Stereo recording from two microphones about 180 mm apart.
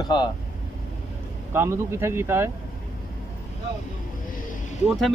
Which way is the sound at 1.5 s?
15° right (ahead or behind).